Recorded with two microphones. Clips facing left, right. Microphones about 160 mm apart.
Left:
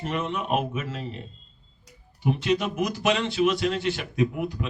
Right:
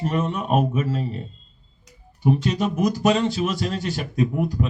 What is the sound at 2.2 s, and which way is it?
A man's voice, 40° right (ahead or behind).